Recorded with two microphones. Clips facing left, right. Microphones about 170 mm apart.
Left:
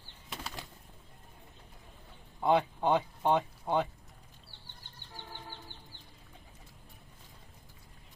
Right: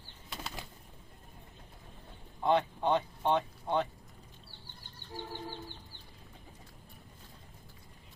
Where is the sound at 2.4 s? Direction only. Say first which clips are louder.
Left 1 dB; 10° left (ahead or behind).